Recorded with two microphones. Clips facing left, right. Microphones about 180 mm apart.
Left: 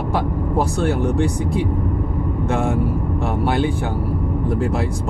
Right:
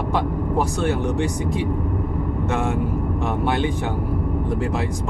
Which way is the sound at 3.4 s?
10° left (ahead or behind).